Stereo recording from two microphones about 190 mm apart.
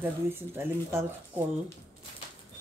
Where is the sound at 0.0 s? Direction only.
10° right (ahead or behind).